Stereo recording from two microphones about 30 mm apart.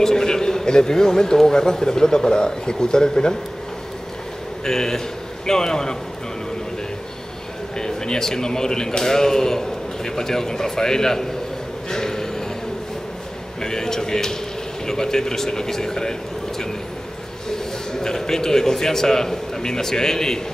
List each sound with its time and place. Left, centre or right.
0.0 s a man's voice: centre
4.6 s a man's voice: centre
7.7 s a man's voice: left
11.9 s a sound: centre
13.6 s a man's voice: centre